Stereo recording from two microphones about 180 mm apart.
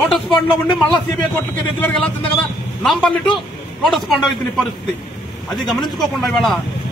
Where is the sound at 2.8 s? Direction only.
Centre (ahead or behind).